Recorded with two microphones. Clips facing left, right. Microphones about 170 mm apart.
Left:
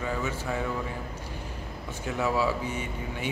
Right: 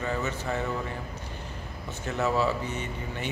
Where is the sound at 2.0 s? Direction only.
10° left (ahead or behind).